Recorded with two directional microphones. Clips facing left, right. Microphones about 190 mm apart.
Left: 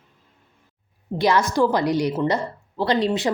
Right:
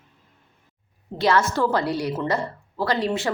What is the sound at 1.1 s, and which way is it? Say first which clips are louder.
A woman's voice: left 1 dB; 15° left (ahead or behind).